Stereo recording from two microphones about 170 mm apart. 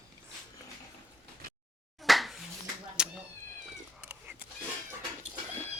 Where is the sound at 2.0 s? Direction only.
Centre (ahead or behind).